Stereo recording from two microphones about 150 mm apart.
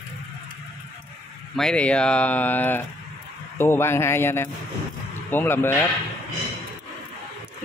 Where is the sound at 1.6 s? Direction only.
5° left (ahead or behind).